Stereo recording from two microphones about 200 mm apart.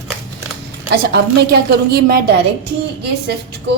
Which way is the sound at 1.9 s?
50° right (ahead or behind).